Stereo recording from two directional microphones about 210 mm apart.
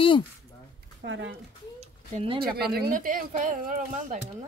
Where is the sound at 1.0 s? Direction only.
65° right (ahead or behind).